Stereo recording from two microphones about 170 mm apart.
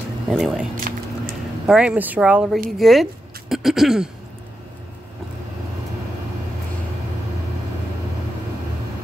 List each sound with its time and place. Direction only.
0.3 s speech: centre (ahead or behind)
0.9 s a sound: 55° right (ahead or behind)
1.7 s speech: 5° right (ahead or behind)